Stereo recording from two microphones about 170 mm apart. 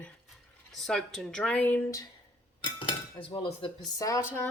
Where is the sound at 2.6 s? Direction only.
30° left (ahead or behind).